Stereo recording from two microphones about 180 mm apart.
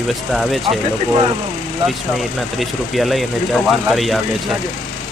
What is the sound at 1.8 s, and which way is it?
Speech, centre (ahead or behind).